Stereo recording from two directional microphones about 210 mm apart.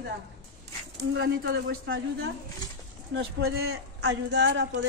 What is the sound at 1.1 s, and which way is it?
Speech, 50° right (ahead or behind).